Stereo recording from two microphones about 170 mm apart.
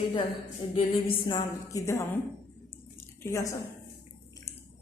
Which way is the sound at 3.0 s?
15° left (ahead or behind).